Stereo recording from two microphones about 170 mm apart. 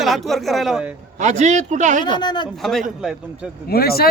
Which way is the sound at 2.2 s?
25° left (ahead or behind).